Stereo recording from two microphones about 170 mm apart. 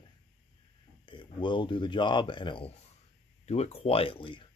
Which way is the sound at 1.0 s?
30° left (ahead or behind).